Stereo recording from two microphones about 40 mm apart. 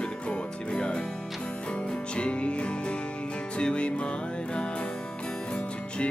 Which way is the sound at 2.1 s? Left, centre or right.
Left.